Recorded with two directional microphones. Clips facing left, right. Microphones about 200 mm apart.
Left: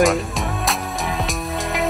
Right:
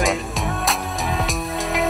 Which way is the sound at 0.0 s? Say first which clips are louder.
Left 4 dB; centre (ahead or behind).